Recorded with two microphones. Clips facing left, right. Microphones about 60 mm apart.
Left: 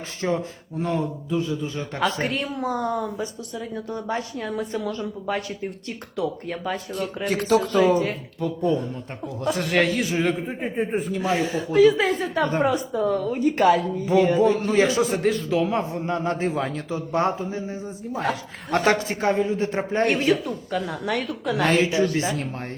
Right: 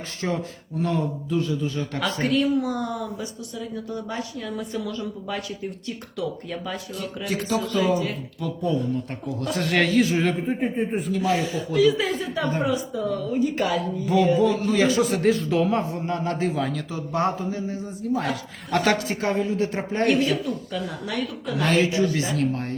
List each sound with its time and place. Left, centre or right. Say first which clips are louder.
0.2 s a man's voice: left 3 dB; left
9.6 s a man's voice: right 2 dB; centre
10.8 s a woman's voice: even; left
14.0 s a man's voice: right 1 dB; left
15.2 s a man's voice: right 1 dB; centre
15.8 s a man's voice: left 1 dB; left
21.1 s a woman's voice: left 4 dB; left
21.6 s a woman's voice: even; left